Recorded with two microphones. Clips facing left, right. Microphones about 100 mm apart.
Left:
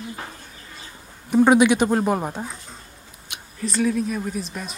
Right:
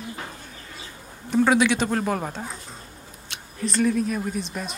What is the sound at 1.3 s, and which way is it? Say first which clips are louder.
Speech: left 4 dB; 15° left (ahead or behind).